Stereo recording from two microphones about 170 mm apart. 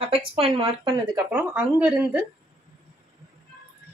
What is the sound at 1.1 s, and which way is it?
A woman's voice, 10° right (ahead or behind).